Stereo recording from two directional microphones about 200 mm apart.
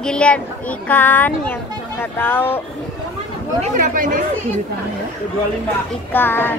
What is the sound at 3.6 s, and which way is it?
Speech, 40° right (ahead or behind).